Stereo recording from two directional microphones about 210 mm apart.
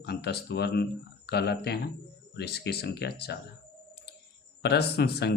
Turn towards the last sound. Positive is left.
turn(degrees=50)  # may be behind; listen again after turning